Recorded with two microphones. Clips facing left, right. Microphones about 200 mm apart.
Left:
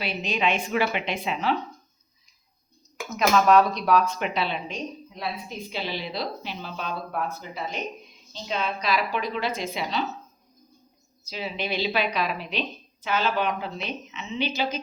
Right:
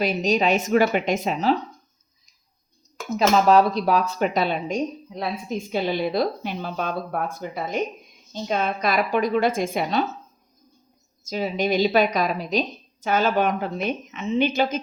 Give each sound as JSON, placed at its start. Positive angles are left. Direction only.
{"t": 0.0, "sound": "speech", "side_deg": -40}
{"t": 3.1, "sound": "speech", "side_deg": -30}
{"t": 11.3, "sound": "speech", "side_deg": -45}